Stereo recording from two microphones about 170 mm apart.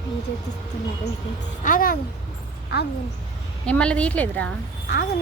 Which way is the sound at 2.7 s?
80° left.